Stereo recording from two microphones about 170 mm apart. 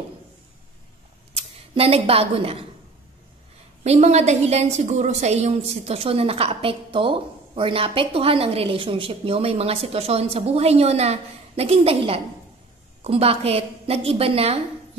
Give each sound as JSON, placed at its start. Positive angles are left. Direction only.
{"t": 1.3, "sound": "speech", "side_deg": -35}
{"t": 3.8, "sound": "a woman's voice", "side_deg": -40}